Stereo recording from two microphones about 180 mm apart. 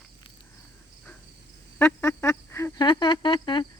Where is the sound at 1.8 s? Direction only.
10° left (ahead or behind); by 3.7 s 25° left (ahead or behind).